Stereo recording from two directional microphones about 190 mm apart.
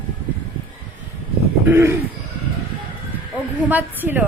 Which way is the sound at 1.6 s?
15° right (ahead or behind).